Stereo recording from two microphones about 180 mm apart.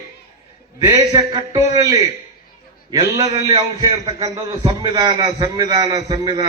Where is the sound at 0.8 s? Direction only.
20° right (ahead or behind).